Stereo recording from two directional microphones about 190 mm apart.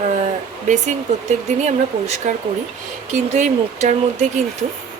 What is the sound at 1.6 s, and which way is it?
Speech, 35° right (ahead or behind).